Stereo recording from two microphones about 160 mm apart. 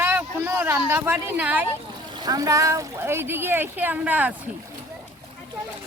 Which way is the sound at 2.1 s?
25° right (ahead or behind).